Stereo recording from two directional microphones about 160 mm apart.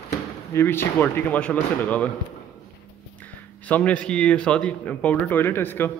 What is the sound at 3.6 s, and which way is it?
A man's voice, 10° left (ahead or behind).